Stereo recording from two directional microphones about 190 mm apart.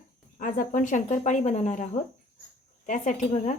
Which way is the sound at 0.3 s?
45° left (ahead or behind).